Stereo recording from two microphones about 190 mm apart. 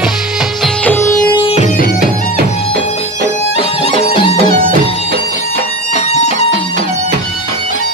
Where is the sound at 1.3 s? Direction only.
25° left (ahead or behind).